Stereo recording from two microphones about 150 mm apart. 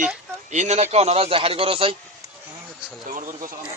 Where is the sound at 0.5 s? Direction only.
50° right (ahead or behind).